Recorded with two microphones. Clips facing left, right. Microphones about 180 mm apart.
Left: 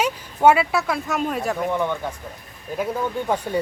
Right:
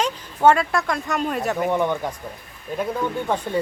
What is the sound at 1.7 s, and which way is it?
Speech, 15° right (ahead or behind).